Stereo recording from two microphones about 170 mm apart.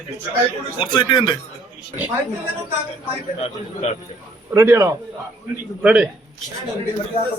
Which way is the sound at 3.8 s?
40° left (ahead or behind).